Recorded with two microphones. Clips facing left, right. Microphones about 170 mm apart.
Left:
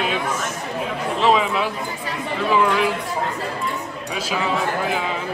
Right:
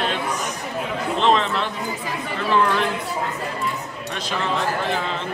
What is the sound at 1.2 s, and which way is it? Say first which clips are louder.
Speech: left 2 dB; 5° left (ahead or behind).